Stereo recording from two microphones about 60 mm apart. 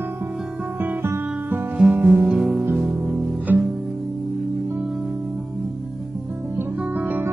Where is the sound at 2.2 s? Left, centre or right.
Centre.